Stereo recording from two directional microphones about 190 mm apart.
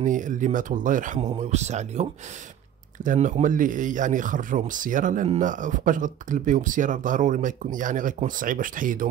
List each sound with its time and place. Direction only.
0.0 s speech: 40° right (ahead or behind)